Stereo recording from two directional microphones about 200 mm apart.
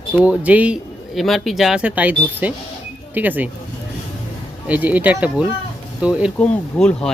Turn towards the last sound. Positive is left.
turn(degrees=5)  # may be behind; listen again after turning